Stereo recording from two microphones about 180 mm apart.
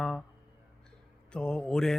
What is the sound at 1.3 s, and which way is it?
Speech, 5° left (ahead or behind).